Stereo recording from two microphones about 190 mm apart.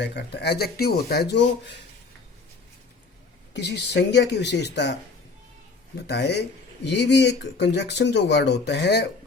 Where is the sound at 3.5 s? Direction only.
65° left (ahead or behind).